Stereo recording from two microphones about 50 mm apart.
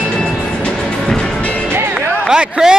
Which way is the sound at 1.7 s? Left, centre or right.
Right.